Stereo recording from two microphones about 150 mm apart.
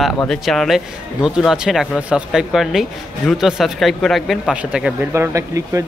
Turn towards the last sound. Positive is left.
turn(degrees=-20)  # may be behind; listen again after turning